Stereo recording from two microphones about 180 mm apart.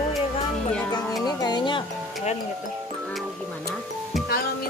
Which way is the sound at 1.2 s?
20° left (ahead or behind).